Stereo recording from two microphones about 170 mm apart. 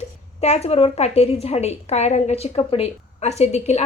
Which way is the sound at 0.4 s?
40° left (ahead or behind).